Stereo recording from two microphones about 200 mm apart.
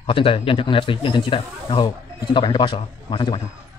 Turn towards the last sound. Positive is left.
turn(degrees=25)  # may be behind; listen again after turning